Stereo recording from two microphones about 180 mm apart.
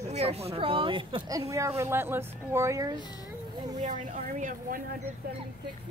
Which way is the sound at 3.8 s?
45° right (ahead or behind).